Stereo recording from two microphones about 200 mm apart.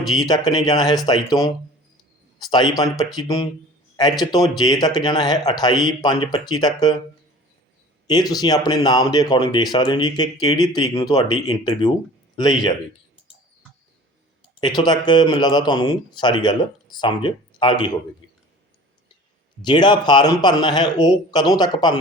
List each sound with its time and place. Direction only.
0.1 s a man's voice: 20° left (ahead or behind)
4.5 s a man's voice: 20° left (ahead or behind)
8.0 s a man's voice: 20° left (ahead or behind)
14.6 s a man's voice: 20° left (ahead or behind)
19.6 s a man's voice: 20° left (ahead or behind)